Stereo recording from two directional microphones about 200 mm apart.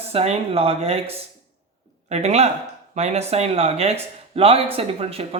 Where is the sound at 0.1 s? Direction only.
30° right (ahead or behind).